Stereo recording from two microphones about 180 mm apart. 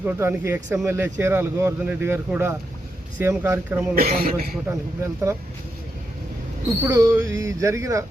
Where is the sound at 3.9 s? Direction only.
60° right (ahead or behind).